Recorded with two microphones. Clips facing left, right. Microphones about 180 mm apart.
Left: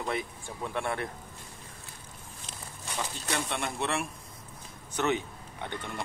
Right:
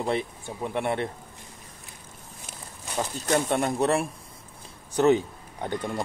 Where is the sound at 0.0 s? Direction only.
30° right (ahead or behind).